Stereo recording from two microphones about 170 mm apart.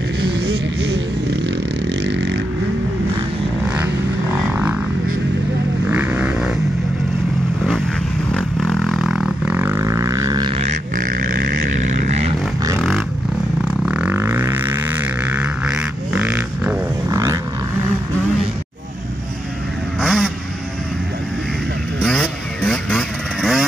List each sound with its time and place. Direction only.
0.2 s a sound: 75° right (ahead or behind)
2.0 s vehicle: 90° right
5.9 s vehicle: 10° right (ahead or behind)
8.3 s vehicle: 5° left (ahead or behind); by 10.5 s 20° right (ahead or behind)
11.0 s vehicle: 55° right (ahead or behind)
12.7 s vehicle: centre (ahead or behind); by 17.4 s 15° right (ahead or behind)
20.0 s vehicle: centre (ahead or behind)
22.0 s vehicle: 5° left (ahead or behind)